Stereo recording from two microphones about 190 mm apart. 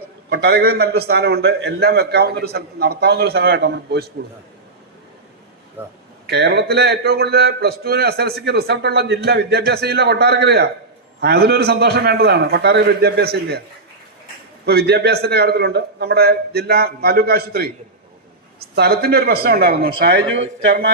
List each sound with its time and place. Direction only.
0.3 s a man's voice: 60° right (ahead or behind)
5.8 s speech: 10° right (ahead or behind)
6.3 s a man's voice: 60° right (ahead or behind)
14.6 s a man's voice: 55° right (ahead or behind)
18.7 s a man's voice: 55° right (ahead or behind)